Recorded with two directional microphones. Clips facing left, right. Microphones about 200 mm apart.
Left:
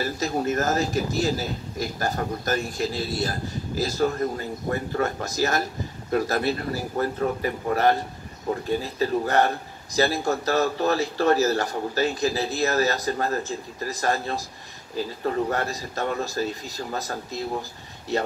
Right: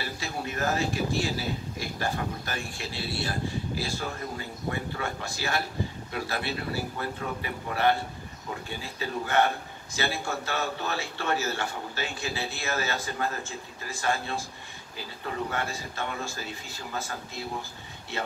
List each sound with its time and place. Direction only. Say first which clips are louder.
0.0 s a man's voice: left 9 dB; 45° left (ahead or behind)